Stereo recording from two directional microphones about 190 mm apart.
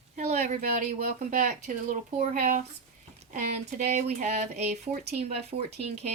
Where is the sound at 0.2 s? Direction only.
35° right (ahead or behind).